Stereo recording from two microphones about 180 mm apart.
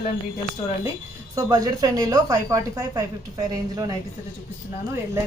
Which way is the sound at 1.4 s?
20° right (ahead or behind).